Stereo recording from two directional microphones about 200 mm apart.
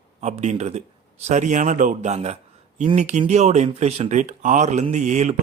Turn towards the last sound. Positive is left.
turn(degrees=-35)  # may be behind; listen again after turning